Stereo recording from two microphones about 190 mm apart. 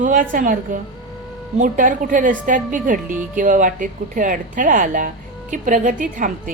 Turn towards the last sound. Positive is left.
turn(degrees=-45)  # may be behind; listen again after turning